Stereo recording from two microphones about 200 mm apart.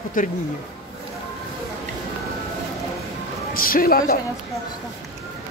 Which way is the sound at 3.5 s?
45° left (ahead or behind).